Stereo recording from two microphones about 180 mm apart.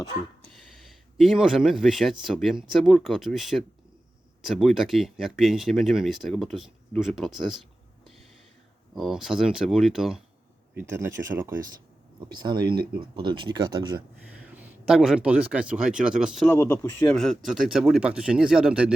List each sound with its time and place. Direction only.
0.9 s speech: centre (ahead or behind)
9.0 s speech: centre (ahead or behind)
10.8 s speech: 15° right (ahead or behind)
12.3 s speech: 25° right (ahead or behind)
14.3 s speech: 10° right (ahead or behind)
16.5 s speech: 10° left (ahead or behind)
17.2 s speech: centre (ahead or behind)